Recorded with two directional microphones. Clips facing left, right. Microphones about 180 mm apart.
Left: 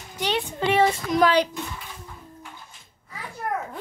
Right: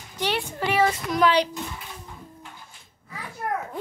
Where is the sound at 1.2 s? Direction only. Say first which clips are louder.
Left 1 dB; 45° left (ahead or behind).